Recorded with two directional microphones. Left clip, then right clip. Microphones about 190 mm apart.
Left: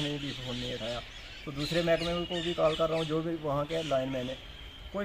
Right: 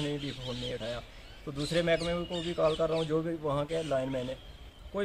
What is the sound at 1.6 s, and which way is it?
Speech, 5° right (ahead or behind).